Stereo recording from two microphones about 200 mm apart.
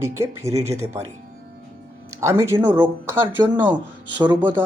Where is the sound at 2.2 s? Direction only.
15° right (ahead or behind).